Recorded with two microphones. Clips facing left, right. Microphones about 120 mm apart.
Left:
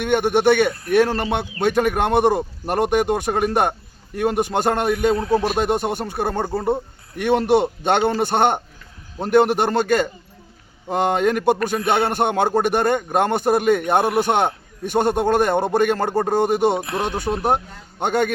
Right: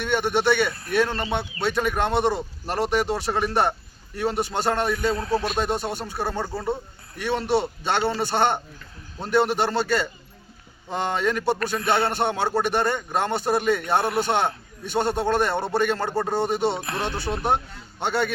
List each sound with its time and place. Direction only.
0.0 s a man's voice: 50° left (ahead or behind)
5.1 s speech: 15° left (ahead or behind)
5.5 s a man's voice: 55° left (ahead or behind)
11.8 s speech: 15° left (ahead or behind)
12.1 s a man's voice: 50° left (ahead or behind)
14.0 s speech: 15° left (ahead or behind)
14.8 s a man's voice: 50° left (ahead or behind)
16.7 s speech: 15° left (ahead or behind)
18.0 s a man's voice: 50° left (ahead or behind)